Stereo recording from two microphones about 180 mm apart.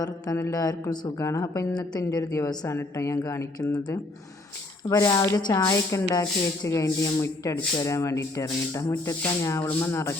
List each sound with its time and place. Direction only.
0.0 s speech: 20° left (ahead or behind)
4.9 s speech: 20° left (ahead or behind)